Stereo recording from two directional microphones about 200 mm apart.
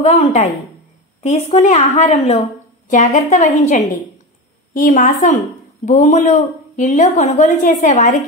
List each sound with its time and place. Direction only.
0.0 s a woman's voice: 35° left (ahead or behind)